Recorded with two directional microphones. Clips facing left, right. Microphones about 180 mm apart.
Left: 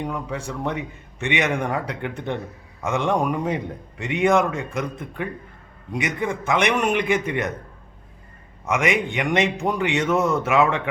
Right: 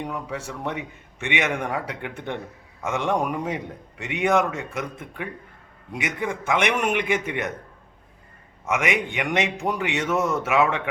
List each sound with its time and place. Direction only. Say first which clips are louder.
0.0 s a man's voice: left 2 dB; 5° right (ahead or behind)
8.6 s a man's voice: left 3 dB; 5° right (ahead or behind)